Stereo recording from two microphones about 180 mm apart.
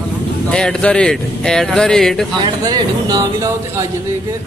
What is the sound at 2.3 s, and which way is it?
Speech, 25° right (ahead or behind).